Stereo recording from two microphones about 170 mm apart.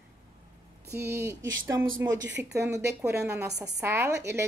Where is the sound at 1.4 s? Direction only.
90° right.